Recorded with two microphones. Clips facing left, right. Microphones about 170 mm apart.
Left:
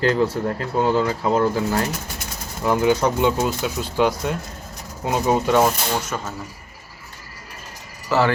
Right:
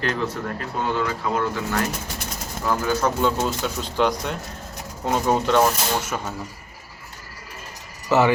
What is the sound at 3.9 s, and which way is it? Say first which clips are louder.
Speech: left 2 dB; 5° left (ahead or behind).